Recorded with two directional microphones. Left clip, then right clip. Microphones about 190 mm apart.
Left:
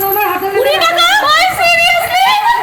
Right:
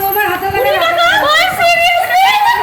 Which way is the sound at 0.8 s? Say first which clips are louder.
Left 1 dB; 75° left (ahead or behind).